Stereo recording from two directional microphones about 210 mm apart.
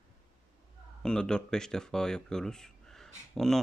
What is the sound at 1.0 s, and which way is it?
Speech, 5° left (ahead or behind).